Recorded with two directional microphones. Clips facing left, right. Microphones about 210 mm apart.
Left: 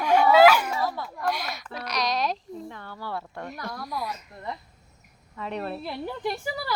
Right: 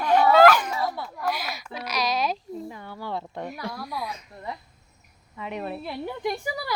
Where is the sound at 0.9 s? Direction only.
5° right (ahead or behind); by 3.4 s 20° right (ahead or behind).